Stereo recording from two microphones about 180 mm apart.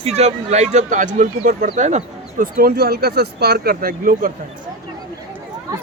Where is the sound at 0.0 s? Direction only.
35° right (ahead or behind).